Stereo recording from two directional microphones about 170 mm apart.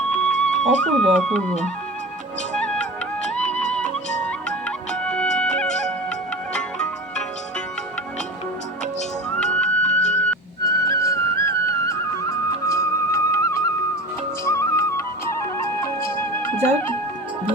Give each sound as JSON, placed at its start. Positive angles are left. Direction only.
{"t": 0.2, "sound": "speech", "side_deg": 5}
{"t": 2.6, "sound": "music", "side_deg": 5}
{"t": 9.3, "sound": "music", "side_deg": 5}
{"t": 10.7, "sound": "music", "side_deg": 20}